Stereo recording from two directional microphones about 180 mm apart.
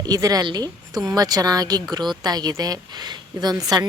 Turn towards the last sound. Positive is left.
turn(degrees=-20)  # may be behind; listen again after turning